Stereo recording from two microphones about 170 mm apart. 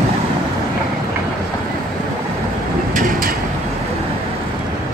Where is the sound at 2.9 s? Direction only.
50° right (ahead or behind).